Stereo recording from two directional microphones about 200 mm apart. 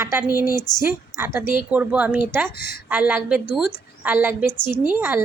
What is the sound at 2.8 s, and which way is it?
A woman's voice, 10° right (ahead or behind).